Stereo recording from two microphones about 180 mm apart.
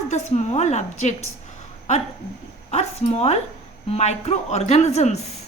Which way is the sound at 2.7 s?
35° left (ahead or behind).